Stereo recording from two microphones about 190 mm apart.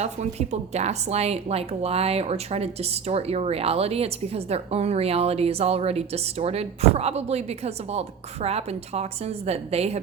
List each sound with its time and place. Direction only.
0.0 s a woman's voice: 35° right (ahead or behind)